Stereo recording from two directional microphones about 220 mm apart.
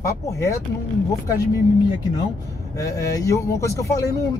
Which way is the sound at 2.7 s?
15° left (ahead or behind).